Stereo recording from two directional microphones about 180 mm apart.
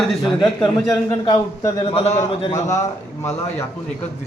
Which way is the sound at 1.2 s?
30° left (ahead or behind).